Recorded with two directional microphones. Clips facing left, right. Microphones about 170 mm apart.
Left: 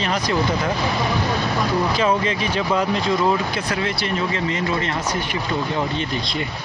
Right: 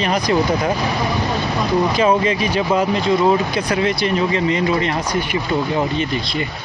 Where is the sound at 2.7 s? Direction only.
20° right (ahead or behind).